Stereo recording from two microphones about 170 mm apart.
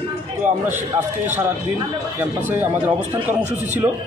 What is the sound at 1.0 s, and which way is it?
Speech, 10° right (ahead or behind).